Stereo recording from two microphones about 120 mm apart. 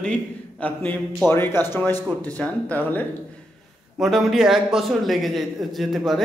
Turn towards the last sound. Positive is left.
turn(degrees=0)  # may be behind; listen again after turning